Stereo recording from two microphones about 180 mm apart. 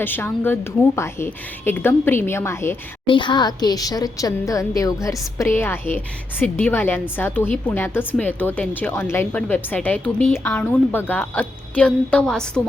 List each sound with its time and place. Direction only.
0.0 s a woman's voice: 10° left (ahead or behind)
3.1 s a woman's voice: 25° left (ahead or behind); by 12.6 s 5° left (ahead or behind)